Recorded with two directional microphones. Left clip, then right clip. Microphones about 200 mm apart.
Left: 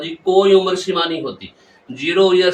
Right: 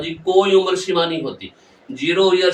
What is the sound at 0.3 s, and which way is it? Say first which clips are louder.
Speech: left 2 dB; 20° right (ahead or behind).